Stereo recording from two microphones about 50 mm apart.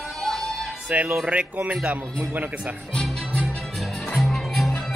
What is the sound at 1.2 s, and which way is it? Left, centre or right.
Speech, right.